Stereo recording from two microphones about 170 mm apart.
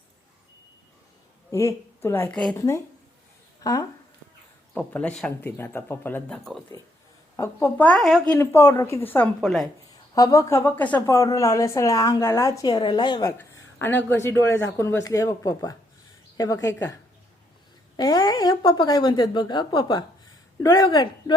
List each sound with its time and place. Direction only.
1.5 s a woman's voice: 15° left (ahead or behind)
4.7 s a woman's voice: 5° left (ahead or behind)
7.3 s a woman's voice: 15° left (ahead or behind)
10.2 s a woman's voice: 20° left (ahead or behind)
13.7 s a woman's voice: 15° left (ahead or behind)